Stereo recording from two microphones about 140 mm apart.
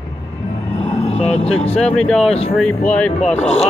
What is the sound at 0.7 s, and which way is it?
Vehicle, 50° left (ahead or behind).